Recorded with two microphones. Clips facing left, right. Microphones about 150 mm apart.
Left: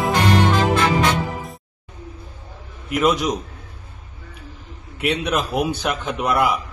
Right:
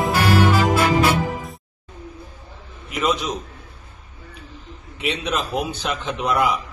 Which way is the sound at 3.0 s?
10° left (ahead or behind).